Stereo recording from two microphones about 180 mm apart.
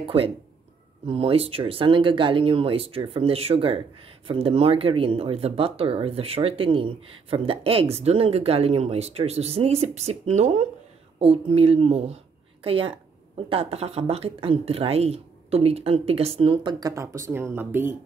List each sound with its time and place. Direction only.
0.0 s speech: 30° right (ahead or behind); by 17.9 s 10° right (ahead or behind)